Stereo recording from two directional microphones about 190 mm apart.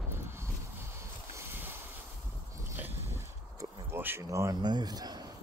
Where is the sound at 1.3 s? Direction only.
10° right (ahead or behind).